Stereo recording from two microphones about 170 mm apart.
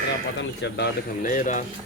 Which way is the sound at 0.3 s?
90° left.